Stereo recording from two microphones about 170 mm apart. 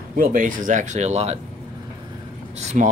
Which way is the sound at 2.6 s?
40° right (ahead or behind).